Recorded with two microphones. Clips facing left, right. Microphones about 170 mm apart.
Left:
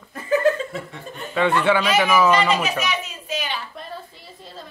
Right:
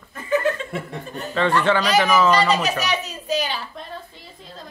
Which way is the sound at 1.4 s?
10° left (ahead or behind).